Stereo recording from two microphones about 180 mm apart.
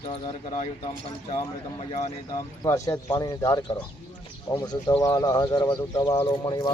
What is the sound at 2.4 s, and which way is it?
Speech, 20° left (ahead or behind).